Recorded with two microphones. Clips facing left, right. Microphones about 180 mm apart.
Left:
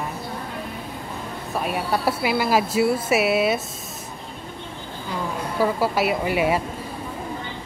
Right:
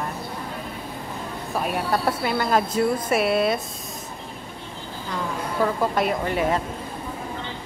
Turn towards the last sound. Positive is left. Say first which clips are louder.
# left 2 dB
turn(degrees=10)  # may be behind; listen again after turning